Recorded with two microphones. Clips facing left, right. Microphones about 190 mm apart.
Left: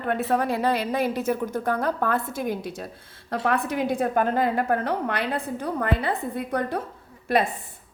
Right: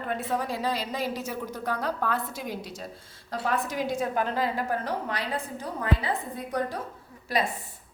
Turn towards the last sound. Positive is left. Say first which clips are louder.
# left 5 dB
turn(degrees=55)  # may be behind; listen again after turning